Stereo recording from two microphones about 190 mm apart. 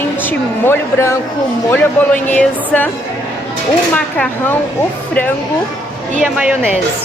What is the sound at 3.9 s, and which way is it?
A woman's voice, 5° left (ahead or behind).